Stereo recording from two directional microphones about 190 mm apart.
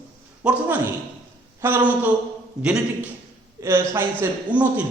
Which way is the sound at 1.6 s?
10° right (ahead or behind).